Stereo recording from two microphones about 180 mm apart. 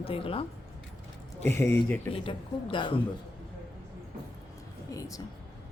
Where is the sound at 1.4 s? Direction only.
15° left (ahead or behind).